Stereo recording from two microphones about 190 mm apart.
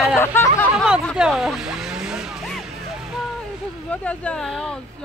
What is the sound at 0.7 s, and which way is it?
Speech, 5° right (ahead or behind).